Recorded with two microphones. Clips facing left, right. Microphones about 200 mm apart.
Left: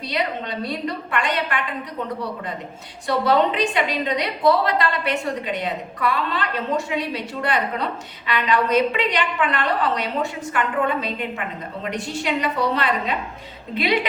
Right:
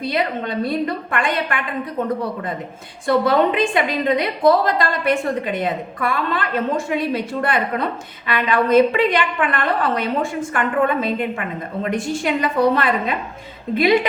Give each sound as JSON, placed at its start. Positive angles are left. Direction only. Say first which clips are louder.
{"t": 0.0, "sound": "a woman's voice", "louder": "right 4 dB", "side_deg": -50}
{"t": 3.1, "sound": "a woman's voice", "louder": "right 3 dB", "side_deg": -50}
{"t": 11.8, "sound": "a woman's voice", "louder": "right 6 dB", "side_deg": -50}